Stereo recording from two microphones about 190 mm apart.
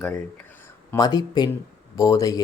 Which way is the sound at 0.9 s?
20° left (ahead or behind).